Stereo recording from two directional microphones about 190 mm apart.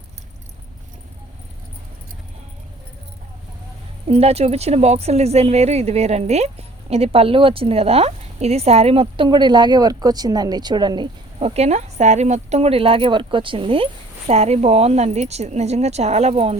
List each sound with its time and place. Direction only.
4.0 s speech: 30° right (ahead or behind)